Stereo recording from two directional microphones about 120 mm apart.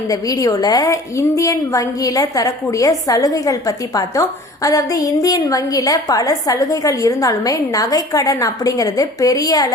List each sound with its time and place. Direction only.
0.1 s a woman's voice: 30° left (ahead or behind)